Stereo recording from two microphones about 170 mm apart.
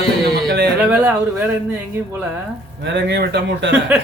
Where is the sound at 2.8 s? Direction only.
85° right.